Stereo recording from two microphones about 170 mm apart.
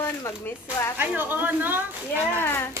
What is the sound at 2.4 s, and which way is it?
Speech, 15° left (ahead or behind).